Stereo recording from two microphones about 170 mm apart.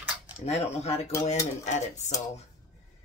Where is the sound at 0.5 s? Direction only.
40° left (ahead or behind).